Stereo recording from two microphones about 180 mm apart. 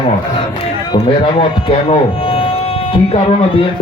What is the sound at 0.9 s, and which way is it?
Speech, 30° left (ahead or behind).